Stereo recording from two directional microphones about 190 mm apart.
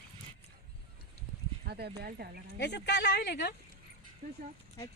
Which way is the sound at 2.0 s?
55° right (ahead or behind).